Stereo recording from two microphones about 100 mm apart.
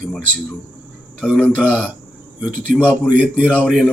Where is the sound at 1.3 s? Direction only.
15° left (ahead or behind).